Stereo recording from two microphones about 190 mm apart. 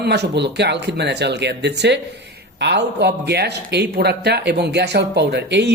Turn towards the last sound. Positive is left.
turn(degrees=-60)  # may be behind; listen again after turning